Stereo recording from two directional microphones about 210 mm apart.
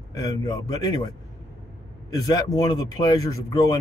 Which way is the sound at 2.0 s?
20° left (ahead or behind).